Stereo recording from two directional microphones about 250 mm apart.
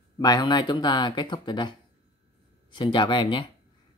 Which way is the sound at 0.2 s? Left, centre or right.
Centre.